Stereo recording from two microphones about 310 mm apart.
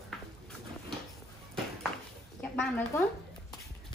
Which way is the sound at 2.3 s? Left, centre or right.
Centre.